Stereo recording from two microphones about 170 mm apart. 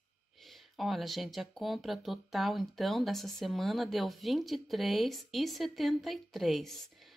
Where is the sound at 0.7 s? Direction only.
Centre (ahead or behind).